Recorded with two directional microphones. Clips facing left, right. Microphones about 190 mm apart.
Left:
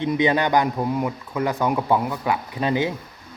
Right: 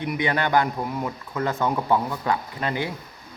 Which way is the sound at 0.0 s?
20° left (ahead or behind).